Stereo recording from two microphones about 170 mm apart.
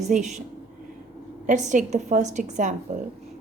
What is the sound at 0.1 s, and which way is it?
Speech, 50° right (ahead or behind).